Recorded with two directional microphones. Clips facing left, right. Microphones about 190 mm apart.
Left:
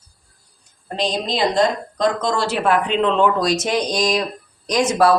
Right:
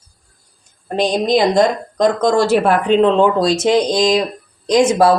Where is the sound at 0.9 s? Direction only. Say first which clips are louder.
Right 7 dB; 50° right (ahead or behind).